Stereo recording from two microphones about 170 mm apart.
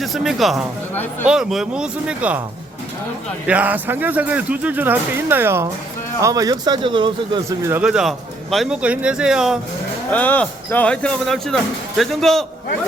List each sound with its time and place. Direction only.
0.0 s speech: centre (ahead or behind)
3.4 s speech: 10° right (ahead or behind); by 7.4 s 30° right (ahead or behind)
7.6 s speech: 10° right (ahead or behind)
10.1 s speech: 10° left (ahead or behind)